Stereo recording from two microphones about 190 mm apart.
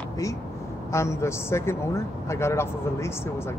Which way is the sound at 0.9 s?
15° left (ahead or behind).